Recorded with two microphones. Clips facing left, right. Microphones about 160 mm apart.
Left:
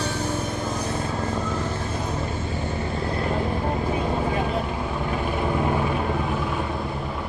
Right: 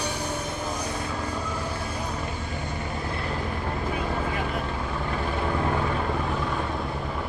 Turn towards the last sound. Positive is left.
turn(degrees=15)  # may be behind; listen again after turning